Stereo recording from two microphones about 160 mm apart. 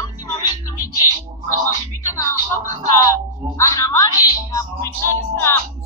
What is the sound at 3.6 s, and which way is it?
Music, 20° left (ahead or behind).